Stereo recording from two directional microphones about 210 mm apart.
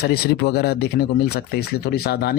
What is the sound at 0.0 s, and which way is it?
Speech, 50° left (ahead or behind).